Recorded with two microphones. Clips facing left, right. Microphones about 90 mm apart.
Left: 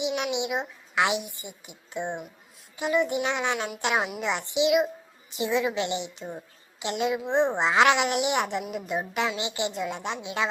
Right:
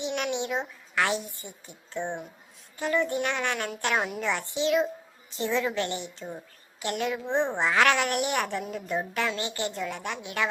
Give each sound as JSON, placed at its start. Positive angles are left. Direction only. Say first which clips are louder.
{"t": 0.0, "sound": "a woman's voice", "louder": "left 2 dB", "side_deg": 15}